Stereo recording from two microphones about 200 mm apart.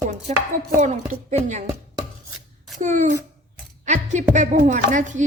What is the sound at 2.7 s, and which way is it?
A woman's voice, 40° right (ahead or behind).